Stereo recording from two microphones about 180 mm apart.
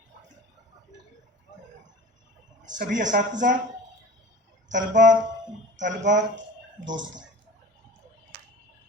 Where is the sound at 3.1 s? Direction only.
55° right (ahead or behind).